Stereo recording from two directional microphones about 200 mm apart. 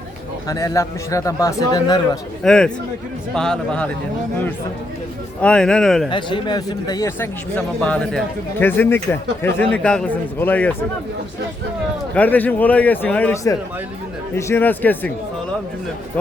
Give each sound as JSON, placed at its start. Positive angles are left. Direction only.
{"t": 0.4, "sound": "speech", "side_deg": 15}
{"t": 2.4, "sound": "a man's voice", "side_deg": 5}
{"t": 5.4, "sound": "a man's voice", "side_deg": 5}
{"t": 6.1, "sound": "speech", "side_deg": 25}
{"t": 12.1, "sound": "speech", "side_deg": 10}